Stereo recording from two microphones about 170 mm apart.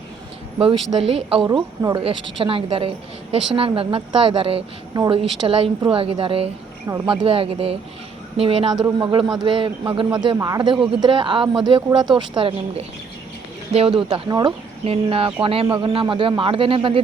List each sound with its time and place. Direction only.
0.6 s a woman's voice: 30° right (ahead or behind)
1.5 s a man's voice: 20° right (ahead or behind)
6.8 s speech: 15° right (ahead or behind)
7.1 s a woman's voice: 30° right (ahead or behind)